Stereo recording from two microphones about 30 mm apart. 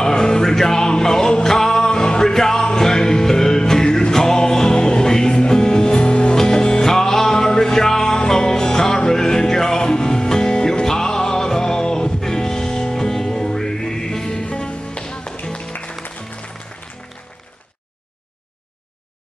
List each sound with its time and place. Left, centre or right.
0.0 s music: left